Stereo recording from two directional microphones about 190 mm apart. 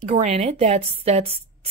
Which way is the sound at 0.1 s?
35° right (ahead or behind).